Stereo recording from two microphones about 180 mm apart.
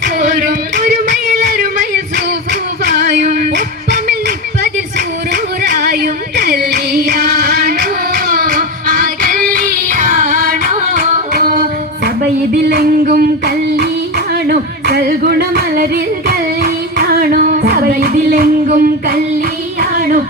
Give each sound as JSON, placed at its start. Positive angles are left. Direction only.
{"t": 0.2, "sound": "singing", "side_deg": -55}
{"t": 1.4, "sound": "a sound", "side_deg": -60}
{"t": 2.9, "sound": "female singing", "side_deg": -60}
{"t": 5.3, "sound": "a sound", "side_deg": -55}
{"t": 11.3, "sound": "female singing", "side_deg": -55}
{"t": 14.4, "sound": "yodeling", "side_deg": -60}
{"t": 19.8, "sound": "music", "side_deg": -55}